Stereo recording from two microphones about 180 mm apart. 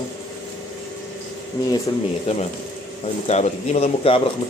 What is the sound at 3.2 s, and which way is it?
Speech, 40° left (ahead or behind).